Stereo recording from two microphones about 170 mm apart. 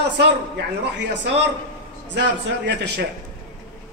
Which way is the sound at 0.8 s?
90° right.